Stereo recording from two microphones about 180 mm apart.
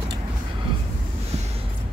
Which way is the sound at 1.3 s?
35° right (ahead or behind).